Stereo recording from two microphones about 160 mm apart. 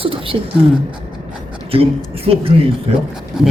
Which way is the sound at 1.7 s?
35° right (ahead or behind).